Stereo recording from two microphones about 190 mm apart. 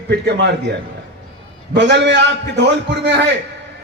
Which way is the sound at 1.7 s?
65° right (ahead or behind).